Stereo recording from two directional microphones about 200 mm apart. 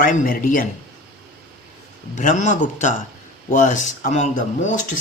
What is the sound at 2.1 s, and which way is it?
Speech, 40° left (ahead or behind).